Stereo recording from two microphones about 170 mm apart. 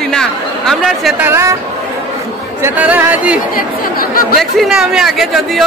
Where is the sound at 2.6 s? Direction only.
10° right (ahead or behind).